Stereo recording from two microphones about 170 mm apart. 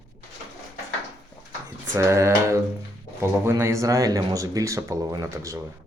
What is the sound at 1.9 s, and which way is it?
Speech, 15° right (ahead or behind).